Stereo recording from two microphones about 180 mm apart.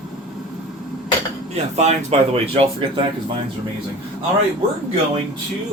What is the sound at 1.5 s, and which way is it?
Speech, 35° right (ahead or behind).